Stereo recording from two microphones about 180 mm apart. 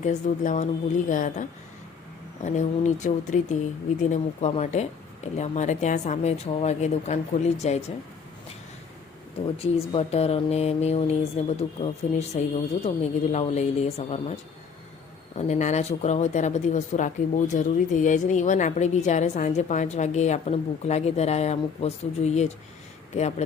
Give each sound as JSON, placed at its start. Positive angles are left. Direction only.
{"t": 0.0, "sound": "a woman's voice", "side_deg": 40}
{"t": 9.7, "sound": "speech", "side_deg": 35}
{"t": 15.4, "sound": "speech", "side_deg": 40}